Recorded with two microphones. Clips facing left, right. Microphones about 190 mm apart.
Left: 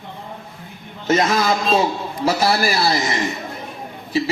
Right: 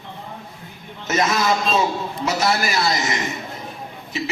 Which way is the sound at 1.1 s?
30° left (ahead or behind).